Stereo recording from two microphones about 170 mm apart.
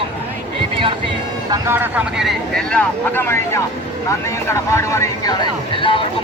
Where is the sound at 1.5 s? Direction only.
15° right (ahead or behind).